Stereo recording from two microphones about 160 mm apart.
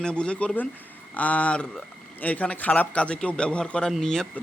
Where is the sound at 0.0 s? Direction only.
5° left (ahead or behind).